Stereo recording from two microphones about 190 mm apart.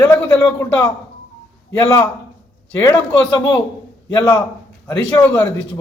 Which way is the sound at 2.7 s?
10° left (ahead or behind).